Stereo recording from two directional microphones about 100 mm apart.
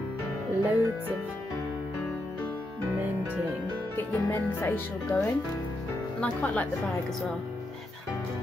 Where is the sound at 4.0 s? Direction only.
20° left (ahead or behind).